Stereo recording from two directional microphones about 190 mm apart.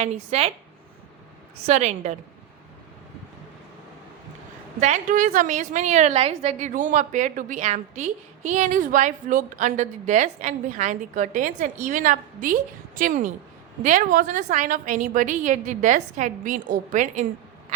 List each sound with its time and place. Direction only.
0.0 s a woman's voice: 35° right (ahead or behind)
1.6 s a woman's voice: 35° right (ahead or behind)
4.8 s a woman's voice: 40° right (ahead or behind)